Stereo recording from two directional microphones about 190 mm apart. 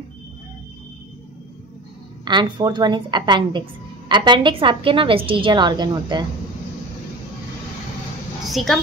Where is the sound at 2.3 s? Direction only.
25° right (ahead or behind).